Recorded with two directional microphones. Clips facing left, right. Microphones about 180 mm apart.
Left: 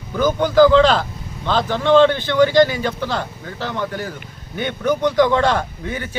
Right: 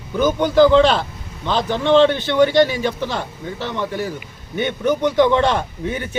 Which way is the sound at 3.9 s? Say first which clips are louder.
Right 3 dB; 10° right (ahead or behind).